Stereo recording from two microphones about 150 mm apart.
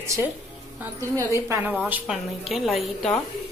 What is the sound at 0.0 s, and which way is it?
A woman's voice, 20° right (ahead or behind).